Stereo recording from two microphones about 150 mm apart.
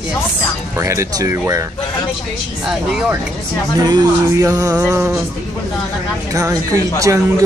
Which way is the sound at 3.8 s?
20° right (ahead or behind).